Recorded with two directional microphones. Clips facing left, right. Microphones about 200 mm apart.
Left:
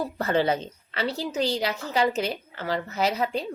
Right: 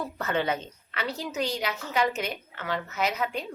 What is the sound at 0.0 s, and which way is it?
A woman's voice, 35° left (ahead or behind).